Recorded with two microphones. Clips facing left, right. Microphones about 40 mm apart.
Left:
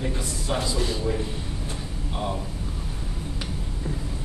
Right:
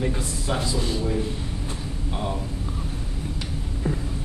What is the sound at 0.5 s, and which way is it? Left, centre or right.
Speech, centre.